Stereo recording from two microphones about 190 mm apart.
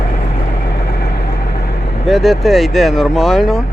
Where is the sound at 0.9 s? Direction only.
55° left (ahead or behind).